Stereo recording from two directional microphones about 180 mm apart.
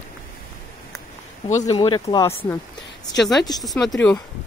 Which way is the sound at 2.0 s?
20° left (ahead or behind).